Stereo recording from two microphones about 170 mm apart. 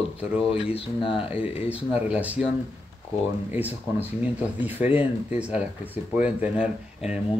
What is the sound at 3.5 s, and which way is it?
Speech, 10° right (ahead or behind).